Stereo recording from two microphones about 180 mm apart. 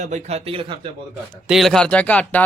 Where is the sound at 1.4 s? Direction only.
Centre (ahead or behind).